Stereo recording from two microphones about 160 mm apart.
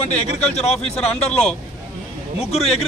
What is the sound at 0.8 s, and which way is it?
Speech, 5° left (ahead or behind).